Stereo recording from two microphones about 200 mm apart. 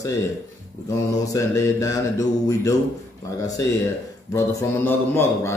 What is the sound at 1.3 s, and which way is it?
Mantra, 15° left (ahead or behind).